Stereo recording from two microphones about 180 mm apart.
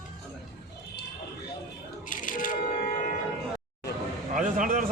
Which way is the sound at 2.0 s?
50° left (ahead or behind).